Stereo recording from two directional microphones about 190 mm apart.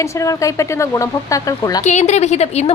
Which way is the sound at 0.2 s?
15° left (ahead or behind).